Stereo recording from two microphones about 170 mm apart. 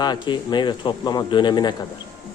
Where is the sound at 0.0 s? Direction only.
25° left (ahead or behind).